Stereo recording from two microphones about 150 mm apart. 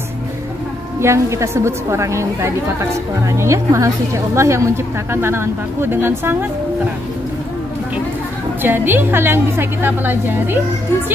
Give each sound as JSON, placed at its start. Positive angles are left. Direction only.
{"t": 0.9, "sound": "a woman's voice", "side_deg": -20}
{"t": 8.6, "sound": "a woman's voice", "side_deg": -15}